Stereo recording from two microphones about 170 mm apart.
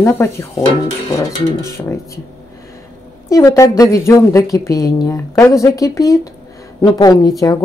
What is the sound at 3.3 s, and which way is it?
A woman's voice, 20° left (ahead or behind).